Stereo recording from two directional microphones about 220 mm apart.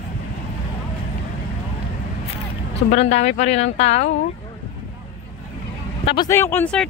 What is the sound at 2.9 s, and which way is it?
Speech, 30° left (ahead or behind).